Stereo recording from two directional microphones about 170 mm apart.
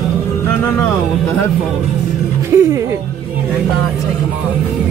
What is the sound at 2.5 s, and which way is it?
Speech, 15° right (ahead or behind).